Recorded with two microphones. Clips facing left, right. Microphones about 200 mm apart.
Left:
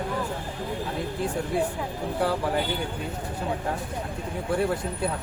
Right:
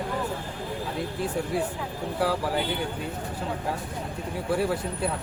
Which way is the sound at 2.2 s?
5° right (ahead or behind).